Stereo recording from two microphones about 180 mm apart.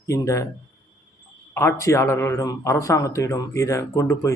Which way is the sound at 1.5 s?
15° left (ahead or behind).